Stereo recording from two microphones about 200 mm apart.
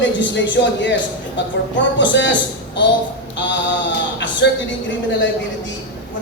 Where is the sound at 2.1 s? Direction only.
65° left (ahead or behind).